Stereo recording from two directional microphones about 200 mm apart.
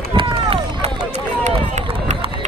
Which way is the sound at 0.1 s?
25° right (ahead or behind).